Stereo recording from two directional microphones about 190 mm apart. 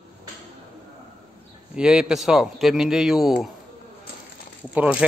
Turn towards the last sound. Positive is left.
turn(degrees=-10)  # may be behind; listen again after turning